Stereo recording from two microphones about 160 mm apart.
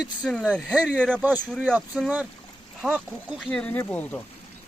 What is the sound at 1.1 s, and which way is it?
Speech, 10° right (ahead or behind).